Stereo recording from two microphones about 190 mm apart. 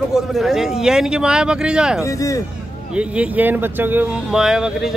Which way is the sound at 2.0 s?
15° left (ahead or behind).